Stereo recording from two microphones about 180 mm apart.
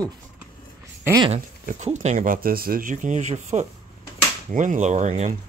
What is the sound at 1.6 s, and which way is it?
Speech, 40° right (ahead or behind).